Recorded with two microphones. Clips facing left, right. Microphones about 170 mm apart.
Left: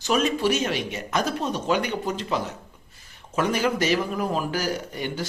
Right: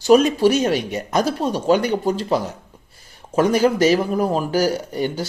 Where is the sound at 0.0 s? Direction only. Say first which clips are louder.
Right 9 dB; 40° right (ahead or behind).